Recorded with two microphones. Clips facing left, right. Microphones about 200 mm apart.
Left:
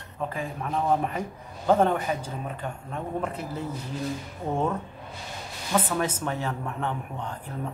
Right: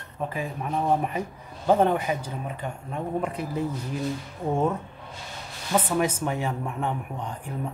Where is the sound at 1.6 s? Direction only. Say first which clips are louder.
Right 1 dB; 10° right (ahead or behind).